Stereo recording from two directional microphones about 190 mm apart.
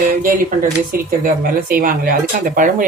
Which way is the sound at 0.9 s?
50° right (ahead or behind).